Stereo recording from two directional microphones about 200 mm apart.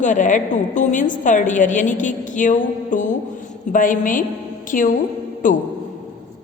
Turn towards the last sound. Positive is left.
turn(degrees=40)  # may be behind; listen again after turning